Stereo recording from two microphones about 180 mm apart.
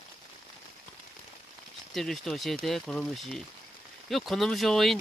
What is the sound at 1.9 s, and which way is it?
Speech, centre (ahead or behind).